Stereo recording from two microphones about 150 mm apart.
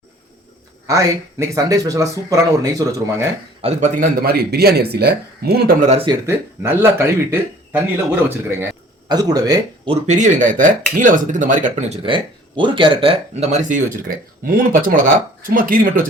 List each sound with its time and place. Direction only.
0.9 s speech: 20° right (ahead or behind)
3.6 s a man's voice: 45° right (ahead or behind)
4.2 s speech: 90° right
5.8 s a man's voice: 45° right (ahead or behind)
6.1 s speech: 20° right (ahead or behind)
9.0 s speech: 25° right (ahead or behind)
10.1 s speech: 55° right (ahead or behind)
12.0 s speech: 35° right (ahead or behind); by 13.8 s 55° right (ahead or behind)
14.4 s speech: 70° right (ahead or behind)